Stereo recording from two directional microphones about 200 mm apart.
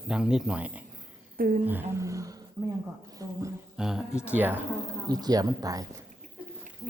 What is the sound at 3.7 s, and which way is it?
Speech, 5° right (ahead or behind).